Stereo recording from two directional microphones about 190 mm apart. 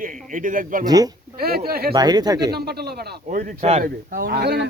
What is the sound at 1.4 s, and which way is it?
Speech, 55° right (ahead or behind).